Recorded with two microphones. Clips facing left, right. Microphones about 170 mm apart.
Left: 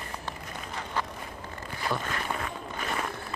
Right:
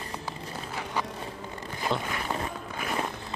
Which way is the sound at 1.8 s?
20° right (ahead or behind).